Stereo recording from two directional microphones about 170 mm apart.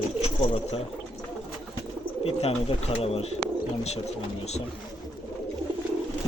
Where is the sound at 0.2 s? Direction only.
40° left (ahead or behind).